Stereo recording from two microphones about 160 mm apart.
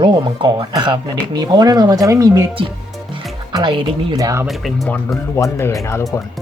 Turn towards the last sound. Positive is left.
turn(degrees=20)  # may be behind; listen again after turning